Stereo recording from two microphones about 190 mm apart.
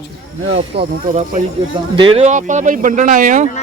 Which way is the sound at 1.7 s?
25° right (ahead or behind).